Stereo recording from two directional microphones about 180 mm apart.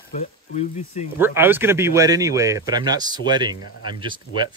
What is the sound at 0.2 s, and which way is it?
Speech, 40° left (ahead or behind).